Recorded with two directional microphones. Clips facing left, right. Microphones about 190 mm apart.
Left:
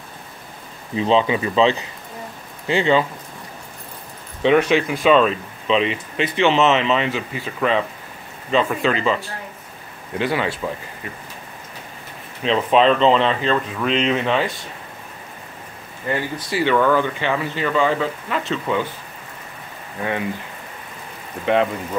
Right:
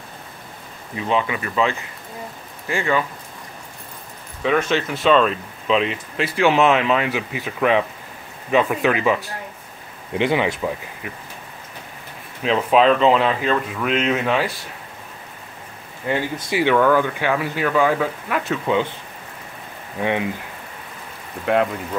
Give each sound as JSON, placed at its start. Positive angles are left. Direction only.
{"t": 0.9, "sound": "speech", "side_deg": 25}
{"t": 4.6, "sound": "speech", "side_deg": 10}
{"t": 12.4, "sound": "speech", "side_deg": -5}
{"t": 16.1, "sound": "speech", "side_deg": -10}
{"t": 20.0, "sound": "speech", "side_deg": -15}